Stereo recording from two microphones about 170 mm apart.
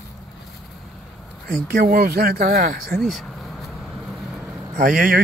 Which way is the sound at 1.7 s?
60° right (ahead or behind).